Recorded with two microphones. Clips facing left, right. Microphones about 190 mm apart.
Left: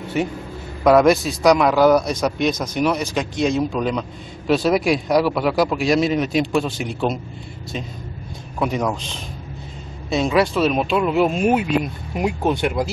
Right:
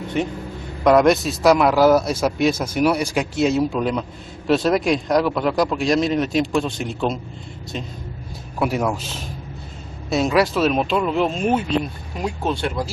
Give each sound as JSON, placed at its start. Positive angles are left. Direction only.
{"t": 0.2, "sound": "a man's voice", "side_deg": 5}
{"t": 8.5, "sound": "a man's voice", "side_deg": -5}